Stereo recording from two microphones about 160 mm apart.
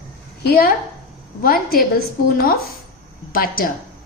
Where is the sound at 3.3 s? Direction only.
65° left (ahead or behind).